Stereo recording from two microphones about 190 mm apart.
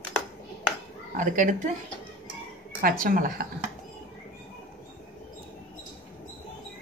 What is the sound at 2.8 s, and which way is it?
Speech, 45° right (ahead or behind).